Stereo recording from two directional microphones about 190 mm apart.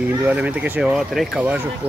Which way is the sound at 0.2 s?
10° right (ahead or behind).